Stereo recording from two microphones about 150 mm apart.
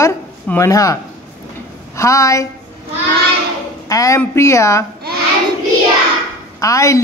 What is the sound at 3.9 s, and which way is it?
Speech, 20° left (ahead or behind).